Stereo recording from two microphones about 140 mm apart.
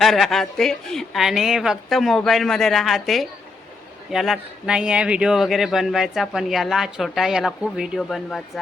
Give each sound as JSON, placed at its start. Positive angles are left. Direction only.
{"t": 0.0, "sound": "speech", "side_deg": 0}